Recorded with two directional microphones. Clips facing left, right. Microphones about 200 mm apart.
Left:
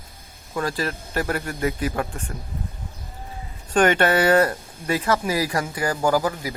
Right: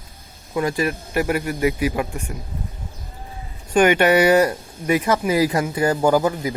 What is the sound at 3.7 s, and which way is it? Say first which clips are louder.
Speech: right 3 dB; 10° right (ahead or behind).